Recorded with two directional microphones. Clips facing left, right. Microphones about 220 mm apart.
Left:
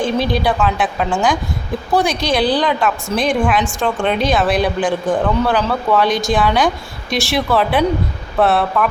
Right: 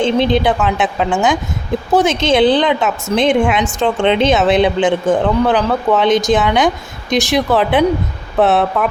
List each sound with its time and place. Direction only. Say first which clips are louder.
0.0 s a woman's voice: right 4 dB; 20° right (ahead or behind)